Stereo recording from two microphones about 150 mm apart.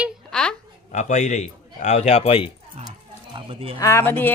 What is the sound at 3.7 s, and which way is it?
Speech, 20° left (ahead or behind).